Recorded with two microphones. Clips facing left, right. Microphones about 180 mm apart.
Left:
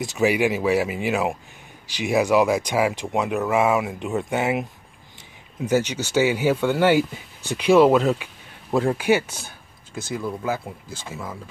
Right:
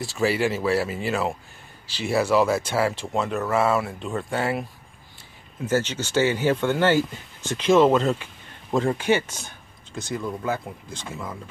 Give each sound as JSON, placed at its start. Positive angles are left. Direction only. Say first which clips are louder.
{"t": 0.0, "sound": "speech", "louder": "left 3 dB", "side_deg": 15}
{"t": 5.7, "sound": "speech", "louder": "left 2 dB", "side_deg": 15}